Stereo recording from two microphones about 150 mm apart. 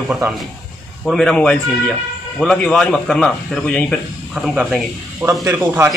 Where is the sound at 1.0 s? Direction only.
Centre (ahead or behind).